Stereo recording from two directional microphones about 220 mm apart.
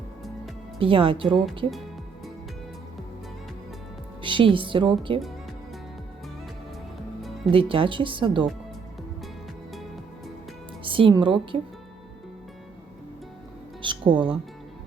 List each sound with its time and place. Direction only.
0.8 s speech: 25° right (ahead or behind)
4.2 s speech: 20° right (ahead or behind)
7.5 s speech: 25° right (ahead or behind)
9.7 s music: centre (ahead or behind)
10.8 s a woman's voice: 25° right (ahead or behind)
13.8 s speech: 20° right (ahead or behind)